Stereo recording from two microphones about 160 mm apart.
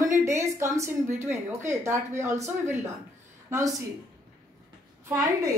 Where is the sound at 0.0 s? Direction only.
20° right (ahead or behind).